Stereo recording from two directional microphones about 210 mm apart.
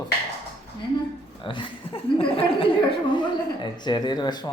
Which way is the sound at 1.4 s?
25° left (ahead or behind).